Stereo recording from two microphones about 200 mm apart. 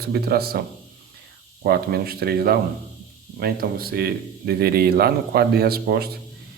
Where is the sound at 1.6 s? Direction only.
50° right (ahead or behind).